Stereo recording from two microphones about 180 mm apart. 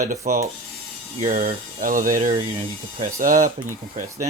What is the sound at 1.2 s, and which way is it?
Speech, 50° right (ahead or behind).